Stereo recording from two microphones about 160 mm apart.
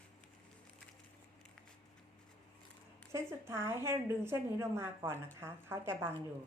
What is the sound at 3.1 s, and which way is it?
A woman's voice, 15° right (ahead or behind).